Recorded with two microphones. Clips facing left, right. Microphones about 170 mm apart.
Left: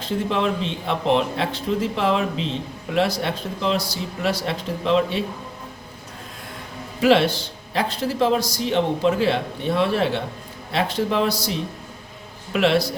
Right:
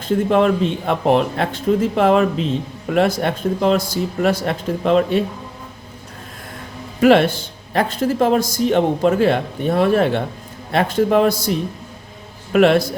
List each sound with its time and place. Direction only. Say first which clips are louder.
0.0 s speech: right 7 dB; 50° right (ahead or behind)
7.0 s speech: right 4 dB; 50° right (ahead or behind)
12.5 s speech: right 6 dB; 50° right (ahead or behind)